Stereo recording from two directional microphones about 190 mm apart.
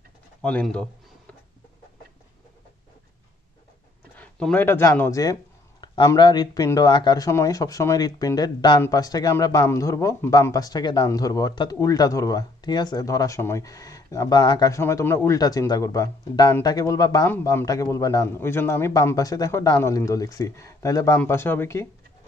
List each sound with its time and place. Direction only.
0.4 s speech: 5° left (ahead or behind)
4.2 s speech: 5° left (ahead or behind)